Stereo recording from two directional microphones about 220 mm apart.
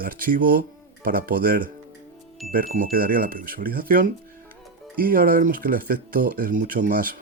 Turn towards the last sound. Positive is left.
turn(degrees=-40)  # may be behind; listen again after turning